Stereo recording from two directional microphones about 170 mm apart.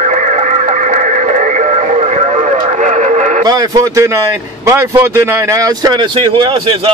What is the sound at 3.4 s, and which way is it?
A man's voice, 20° right (ahead or behind).